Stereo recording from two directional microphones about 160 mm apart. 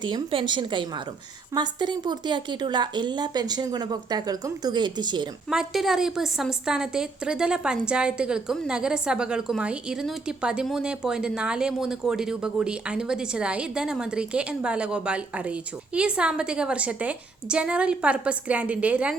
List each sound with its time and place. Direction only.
0.0 s a woman's voice: 30° right (ahead or behind)
5.5 s a woman's voice: 5° right (ahead or behind)